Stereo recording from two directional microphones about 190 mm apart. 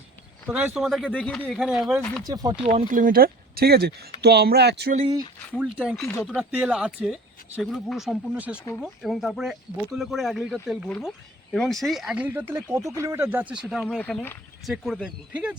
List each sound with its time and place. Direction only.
0.4 s speech: 10° right (ahead or behind)
0.9 s speech: 5° left (ahead or behind)
2.2 s speech: 20° right (ahead or behind)
2.6 s speech: 40° right (ahead or behind); by 4.9 s 60° right (ahead or behind)
5.6 s speech: 5° right (ahead or behind)
14.7 s speech: centre (ahead or behind)